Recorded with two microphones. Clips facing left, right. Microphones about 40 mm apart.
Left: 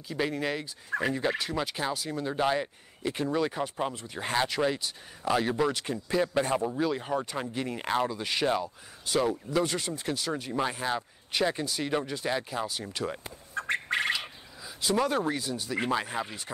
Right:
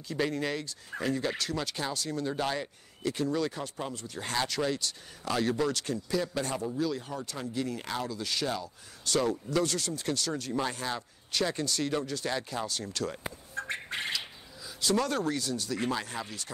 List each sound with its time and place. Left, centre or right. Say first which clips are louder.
0.1 s speech: left 1 dB; centre
9.0 s speech: left 1 dB; centre
13.7 s squawk: left 8 dB; left
14.1 s speech: left 2 dB; centre